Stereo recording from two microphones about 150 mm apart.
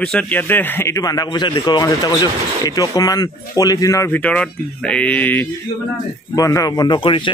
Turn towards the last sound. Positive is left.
turn(degrees=35)  # may be behind; listen again after turning